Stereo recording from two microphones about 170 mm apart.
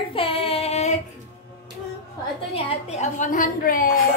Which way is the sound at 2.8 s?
45° left (ahead or behind).